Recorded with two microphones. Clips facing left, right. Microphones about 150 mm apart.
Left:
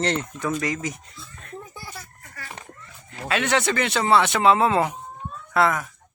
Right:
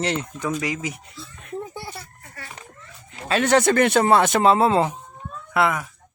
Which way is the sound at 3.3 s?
40° right (ahead or behind).